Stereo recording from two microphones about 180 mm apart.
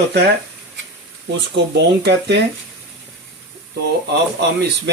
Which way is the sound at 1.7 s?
65° right (ahead or behind).